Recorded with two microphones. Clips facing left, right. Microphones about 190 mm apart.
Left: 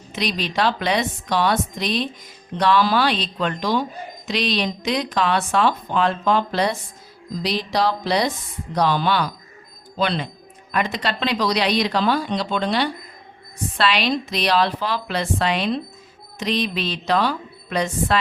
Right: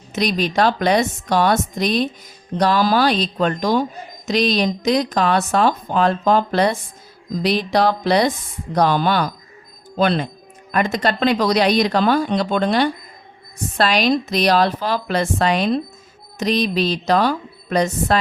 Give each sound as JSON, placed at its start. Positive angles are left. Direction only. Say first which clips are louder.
{"t": 0.1, "sound": "a woman's voice", "louder": "right 5 dB", "side_deg": -45}